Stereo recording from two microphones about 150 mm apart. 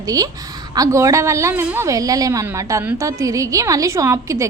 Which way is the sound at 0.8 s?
20° right (ahead or behind).